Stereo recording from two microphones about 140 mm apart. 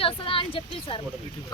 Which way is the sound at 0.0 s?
40° left (ahead or behind).